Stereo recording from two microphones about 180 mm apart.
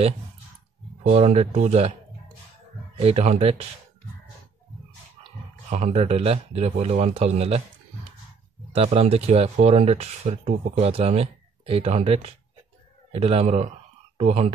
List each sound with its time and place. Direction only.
1.0 s speech: 35° right (ahead or behind)
3.0 s speech: 35° right (ahead or behind)
5.7 s speech: 40° right (ahead or behind)
8.7 s speech: 35° right (ahead or behind)